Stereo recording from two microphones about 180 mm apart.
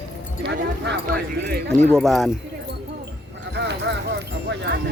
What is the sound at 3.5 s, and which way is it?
Clip-clop, 70° right (ahead or behind).